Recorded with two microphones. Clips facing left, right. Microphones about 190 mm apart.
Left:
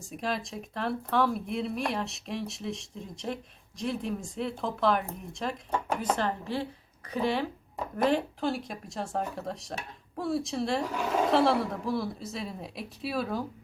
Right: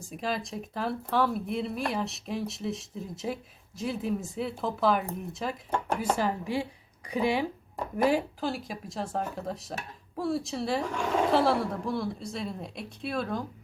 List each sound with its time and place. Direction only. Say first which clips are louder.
0.0 s speech: even; centre (ahead or behind)
6.0 s speech: right 1 dB; 10° right (ahead or behind)